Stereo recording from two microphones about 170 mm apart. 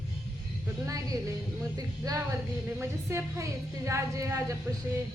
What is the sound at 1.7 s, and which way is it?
A woman's voice, 20° right (ahead or behind).